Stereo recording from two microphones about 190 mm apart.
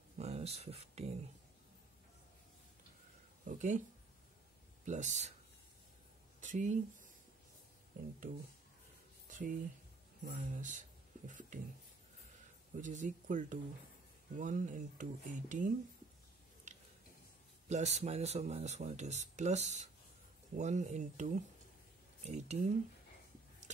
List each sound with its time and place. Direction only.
0.2 s a sound: 35° right (ahead or behind)
3.4 s speech: 40° right (ahead or behind)
4.8 s speech: 40° right (ahead or behind)
6.4 s speech: 40° right (ahead or behind)
8.3 s speech: 50° right (ahead or behind)
12.8 s speech: 40° right (ahead or behind)
16.7 s a sound: 40° right (ahead or behind)
17.6 s speech: 35° right (ahead or behind)